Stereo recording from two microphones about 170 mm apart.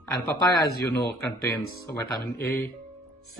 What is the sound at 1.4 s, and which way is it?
Speech, 15° left (ahead or behind).